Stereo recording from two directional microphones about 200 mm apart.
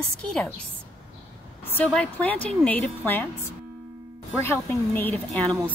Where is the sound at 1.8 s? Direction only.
5° left (ahead or behind).